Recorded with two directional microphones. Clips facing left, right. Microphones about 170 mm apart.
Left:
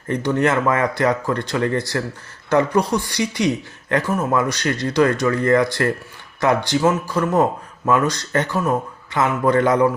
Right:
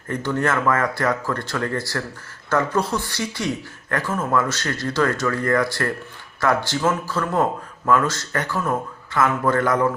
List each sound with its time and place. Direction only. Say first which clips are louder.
0.1 s speech: left 4 dB; 20° left (ahead or behind)